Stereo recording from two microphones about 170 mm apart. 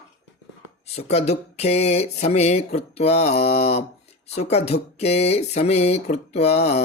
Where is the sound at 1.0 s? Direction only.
40° left (ahead or behind).